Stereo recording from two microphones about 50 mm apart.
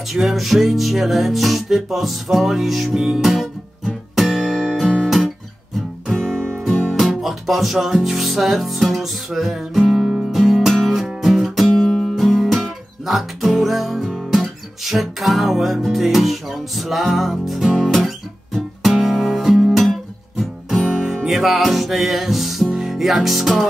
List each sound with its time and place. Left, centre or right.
0.1 s music: centre
6.1 s music: centre
7.0 s music: centre
10.7 s music: centre
11.7 s music: centre
17.9 s guitar: centre
20.8 s music: centre